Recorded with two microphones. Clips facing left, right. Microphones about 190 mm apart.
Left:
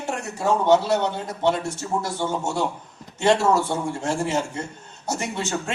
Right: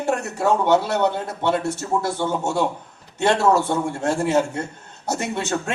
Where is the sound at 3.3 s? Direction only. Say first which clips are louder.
Right 1 dB; 65° right (ahead or behind).